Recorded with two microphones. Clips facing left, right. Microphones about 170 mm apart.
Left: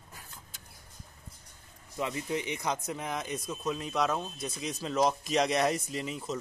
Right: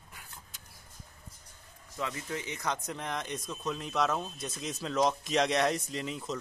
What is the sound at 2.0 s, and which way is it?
Speech, 20° left (ahead or behind).